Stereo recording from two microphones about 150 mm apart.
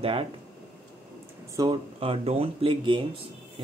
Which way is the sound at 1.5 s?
30° right (ahead or behind).